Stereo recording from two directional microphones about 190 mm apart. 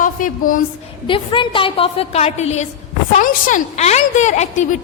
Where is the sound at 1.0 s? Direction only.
25° left (ahead or behind).